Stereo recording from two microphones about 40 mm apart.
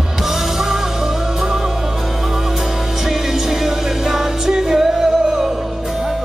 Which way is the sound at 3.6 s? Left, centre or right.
Centre.